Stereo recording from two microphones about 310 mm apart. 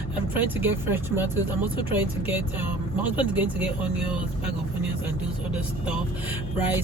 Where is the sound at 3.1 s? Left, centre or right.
Centre.